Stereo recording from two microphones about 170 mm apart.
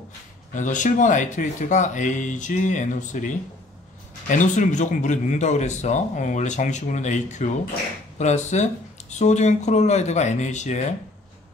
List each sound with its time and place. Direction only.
0.6 s speech: 45° left (ahead or behind)